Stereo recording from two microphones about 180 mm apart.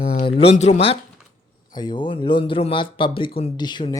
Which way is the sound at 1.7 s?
25° left (ahead or behind).